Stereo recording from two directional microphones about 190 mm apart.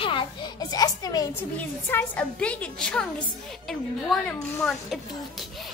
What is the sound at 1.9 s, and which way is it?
A woman's voice, 10° left (ahead or behind).